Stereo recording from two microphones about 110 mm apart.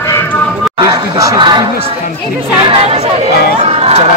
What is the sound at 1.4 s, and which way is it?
Speech, 45° right (ahead or behind).